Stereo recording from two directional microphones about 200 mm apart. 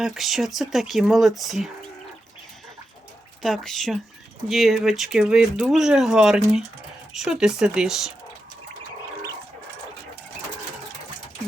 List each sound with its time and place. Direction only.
0.0 s speech: centre (ahead or behind)
3.4 s speech: centre (ahead or behind)